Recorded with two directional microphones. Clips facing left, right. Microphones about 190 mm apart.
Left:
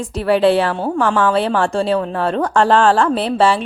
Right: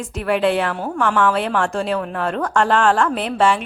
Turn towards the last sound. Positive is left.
turn(degrees=35)  # may be behind; listen again after turning